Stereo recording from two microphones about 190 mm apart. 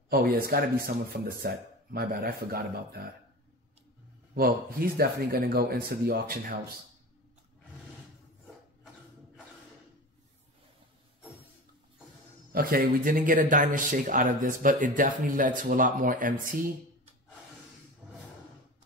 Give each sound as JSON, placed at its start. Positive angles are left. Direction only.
{"t": 0.1, "sound": "speech", "side_deg": -55}
{"t": 4.4, "sound": "speech", "side_deg": -50}
{"t": 12.5, "sound": "speech", "side_deg": -50}